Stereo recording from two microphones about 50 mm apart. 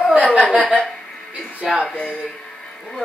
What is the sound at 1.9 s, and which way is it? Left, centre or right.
Speech, left.